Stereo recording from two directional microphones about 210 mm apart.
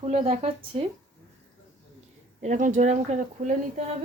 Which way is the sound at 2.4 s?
35° right (ahead or behind).